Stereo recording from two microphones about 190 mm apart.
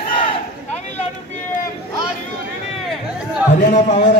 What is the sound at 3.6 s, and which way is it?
Speech, 40° left (ahead or behind).